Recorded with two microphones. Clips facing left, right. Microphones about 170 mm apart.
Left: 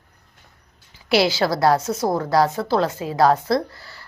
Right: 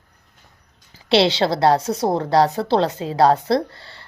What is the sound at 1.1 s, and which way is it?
Speech, 30° right (ahead or behind).